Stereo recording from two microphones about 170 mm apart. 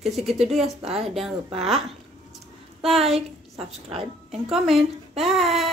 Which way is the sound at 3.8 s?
35° right (ahead or behind).